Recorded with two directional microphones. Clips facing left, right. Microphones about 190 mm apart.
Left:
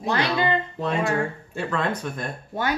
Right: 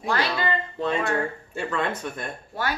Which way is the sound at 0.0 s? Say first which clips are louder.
Left 2 dB; 20° left (ahead or behind).